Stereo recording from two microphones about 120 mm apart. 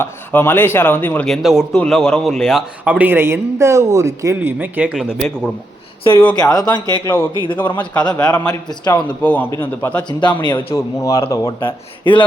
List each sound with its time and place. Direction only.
0.0 s speech: 20° left (ahead or behind)
1.3 s a man's voice: centre (ahead or behind); by 4.4 s 25° right (ahead or behind)
4.4 s a man's voice: 15° right (ahead or behind)
6.3 s a man's voice: 35° left (ahead or behind)
7.0 s a man's voice: 25° left (ahead or behind)
7.6 s a man's voice: 40° left (ahead or behind)
9.2 s a man's voice: 15° left (ahead or behind)
10.1 s a man's voice: 40° left (ahead or behind)
10.8 s a man's voice: 30° left (ahead or behind)